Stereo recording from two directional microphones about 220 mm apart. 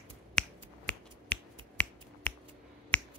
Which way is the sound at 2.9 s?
5° left (ahead or behind).